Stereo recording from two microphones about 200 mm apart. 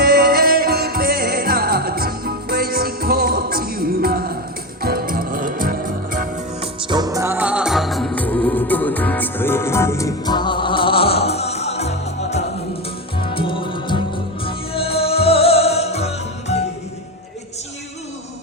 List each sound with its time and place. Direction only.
0.0 s music: 50° right (ahead or behind)
6.8 s music: 20° right (ahead or behind); by 16.6 s 30° left (ahead or behind)